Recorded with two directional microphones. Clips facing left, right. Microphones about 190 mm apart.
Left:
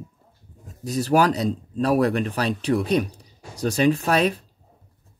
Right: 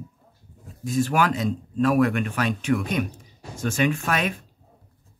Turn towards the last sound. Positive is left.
turn(degrees=35)  # may be behind; listen again after turning